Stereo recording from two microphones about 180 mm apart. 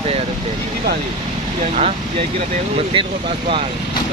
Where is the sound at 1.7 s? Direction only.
35° right (ahead or behind).